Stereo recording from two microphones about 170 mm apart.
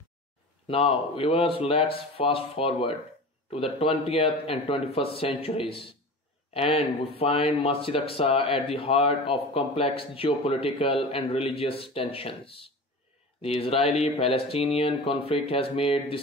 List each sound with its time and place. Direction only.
0.7 s speech: 35° left (ahead or behind)
4.0 s speech: 35° left (ahead or behind)